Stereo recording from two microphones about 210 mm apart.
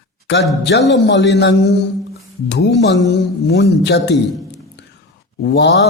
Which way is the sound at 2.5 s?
55° left (ahead or behind).